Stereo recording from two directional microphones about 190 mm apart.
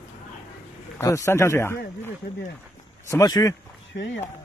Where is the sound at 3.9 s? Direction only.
65° left (ahead or behind).